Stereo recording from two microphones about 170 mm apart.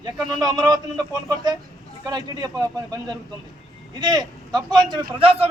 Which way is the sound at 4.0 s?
25° right (ahead or behind).